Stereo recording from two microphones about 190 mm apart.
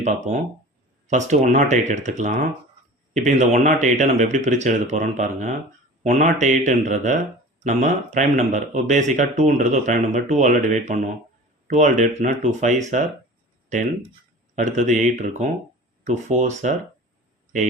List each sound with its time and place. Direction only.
1.0 s speech: 40° right (ahead or behind)
14.5 s speech: 40° right (ahead or behind)